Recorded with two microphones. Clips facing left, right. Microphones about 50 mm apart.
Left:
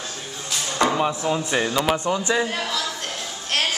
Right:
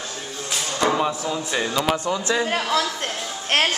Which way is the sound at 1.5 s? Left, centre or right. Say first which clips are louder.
Right 1 dB; centre.